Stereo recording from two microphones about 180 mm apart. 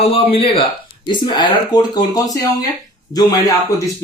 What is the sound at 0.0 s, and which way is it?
Speech, 30° left (ahead or behind).